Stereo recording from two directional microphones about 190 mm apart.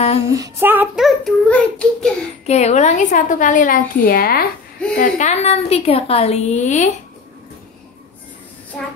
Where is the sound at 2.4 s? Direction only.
35° left (ahead or behind); by 4.5 s 50° left (ahead or behind).